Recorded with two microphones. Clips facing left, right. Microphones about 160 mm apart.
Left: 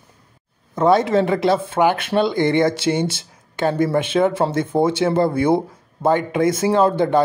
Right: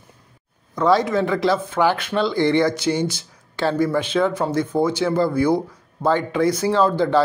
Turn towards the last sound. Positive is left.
turn(degrees=20)  # may be behind; listen again after turning